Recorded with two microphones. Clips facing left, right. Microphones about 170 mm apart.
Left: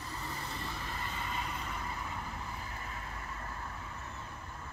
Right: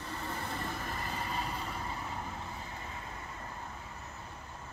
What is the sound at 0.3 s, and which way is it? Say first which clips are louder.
Vehicle: right 5 dB; 55° right (ahead or behind).